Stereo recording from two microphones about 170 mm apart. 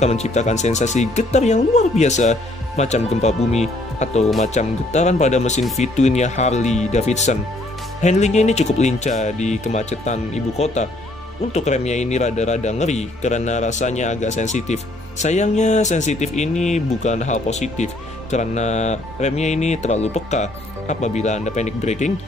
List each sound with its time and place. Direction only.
0.0 s a man's voice: 40° left (ahead or behind)